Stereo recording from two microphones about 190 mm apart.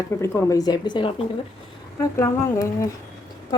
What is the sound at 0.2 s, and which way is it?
A woman's voice, 15° left (ahead or behind).